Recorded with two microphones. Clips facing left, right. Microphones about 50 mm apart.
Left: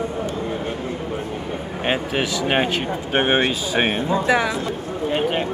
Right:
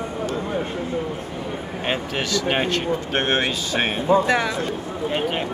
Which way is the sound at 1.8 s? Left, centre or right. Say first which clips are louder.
Left 3 dB; centre.